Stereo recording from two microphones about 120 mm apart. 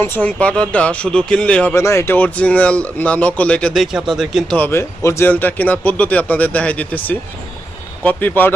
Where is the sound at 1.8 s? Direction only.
25° left (ahead or behind); by 4.6 s centre (ahead or behind).